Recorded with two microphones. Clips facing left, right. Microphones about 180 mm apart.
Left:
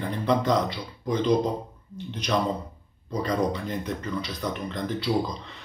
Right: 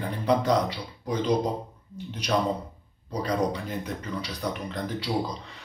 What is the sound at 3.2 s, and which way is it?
Speech, 10° right (ahead or behind).